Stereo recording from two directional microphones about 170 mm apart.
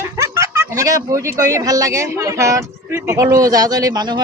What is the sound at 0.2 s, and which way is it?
A woman's voice, 15° right (ahead or behind).